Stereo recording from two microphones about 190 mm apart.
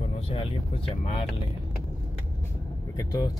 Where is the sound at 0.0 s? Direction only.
30° left (ahead or behind).